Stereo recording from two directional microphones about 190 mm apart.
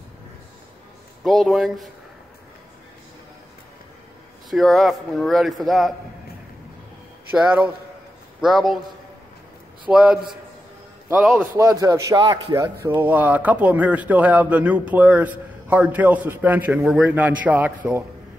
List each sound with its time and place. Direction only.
1.2 s a man's voice: centre (ahead or behind)
4.5 s a man's voice: centre (ahead or behind)
7.3 s a man's voice: 5° right (ahead or behind)
9.8 s a man's voice: 5° right (ahead or behind)